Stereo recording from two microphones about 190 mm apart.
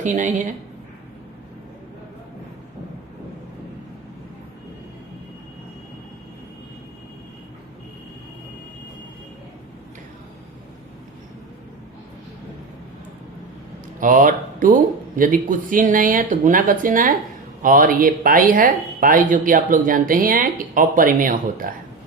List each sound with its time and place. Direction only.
0.0 s a woman's voice: 40° right (ahead or behind)
14.0 s speech: 45° right (ahead or behind)